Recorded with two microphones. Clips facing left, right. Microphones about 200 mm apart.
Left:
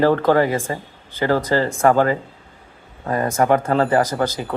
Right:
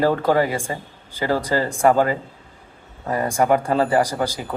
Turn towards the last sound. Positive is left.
turn(degrees=-10)  # may be behind; listen again after turning